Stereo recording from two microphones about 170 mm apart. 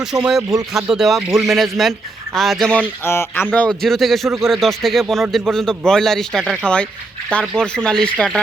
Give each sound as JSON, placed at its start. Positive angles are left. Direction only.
{"t": 0.1, "sound": "speech", "side_deg": -15}
{"t": 0.7, "sound": "speech", "side_deg": 0}